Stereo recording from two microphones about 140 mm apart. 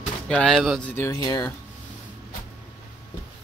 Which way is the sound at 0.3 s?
5° left (ahead or behind).